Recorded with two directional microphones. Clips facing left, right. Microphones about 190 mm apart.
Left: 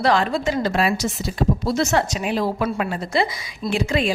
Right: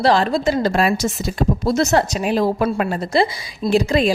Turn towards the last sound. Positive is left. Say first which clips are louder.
# right 5 dB
turn(degrees=-40)  # may be behind; listen again after turning